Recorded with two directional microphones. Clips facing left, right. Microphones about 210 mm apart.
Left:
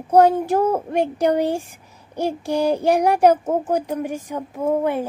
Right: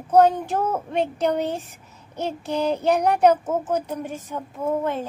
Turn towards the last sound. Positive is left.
turn(degrees=15)  # may be behind; listen again after turning